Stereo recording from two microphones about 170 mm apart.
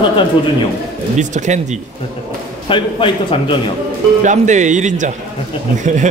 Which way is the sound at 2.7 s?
30° left (ahead or behind).